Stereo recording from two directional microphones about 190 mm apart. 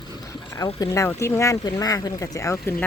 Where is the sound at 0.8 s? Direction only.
15° left (ahead or behind).